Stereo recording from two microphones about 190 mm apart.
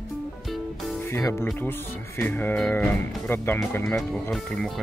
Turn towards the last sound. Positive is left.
turn(degrees=0)  # may be behind; listen again after turning